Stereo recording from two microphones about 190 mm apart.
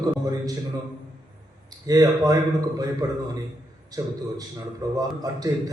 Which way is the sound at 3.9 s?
20° right (ahead or behind).